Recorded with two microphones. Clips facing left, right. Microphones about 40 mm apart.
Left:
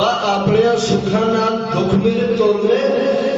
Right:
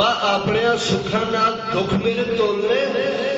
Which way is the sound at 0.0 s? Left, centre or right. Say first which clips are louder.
Left 2 dB; right.